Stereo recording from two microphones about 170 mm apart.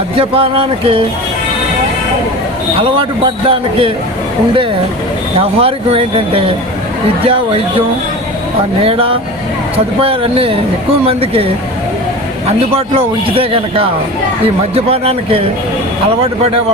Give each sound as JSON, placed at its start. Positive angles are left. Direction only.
{"t": 0.2, "sound": "a man's voice", "side_deg": -35}
{"t": 3.0, "sound": "a man's voice", "side_deg": -30}
{"t": 5.4, "sound": "a man's voice", "side_deg": -35}
{"t": 12.5, "sound": "a man's voice", "side_deg": -35}